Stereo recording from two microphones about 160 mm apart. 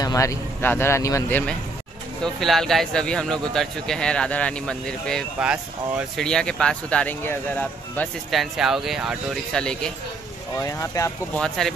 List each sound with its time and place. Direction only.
0.0 s speech: 20° left (ahead or behind)
2.2 s speech: centre (ahead or behind)
5.4 s speech: 5° right (ahead or behind)
6.2 s speech: 5° left (ahead or behind)
8.3 s speech: centre (ahead or behind)
10.6 s speech: 20° left (ahead or behind)
11.3 s speech: 5° left (ahead or behind)